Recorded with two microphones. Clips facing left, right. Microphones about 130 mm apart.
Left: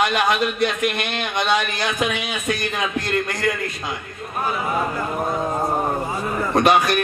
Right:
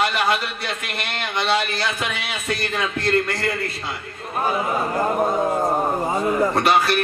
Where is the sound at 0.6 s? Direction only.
15° left (ahead or behind).